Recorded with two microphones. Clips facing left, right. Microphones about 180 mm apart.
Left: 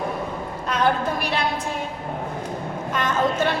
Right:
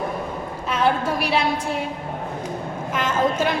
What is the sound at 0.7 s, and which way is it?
Speech, 10° right (ahead or behind).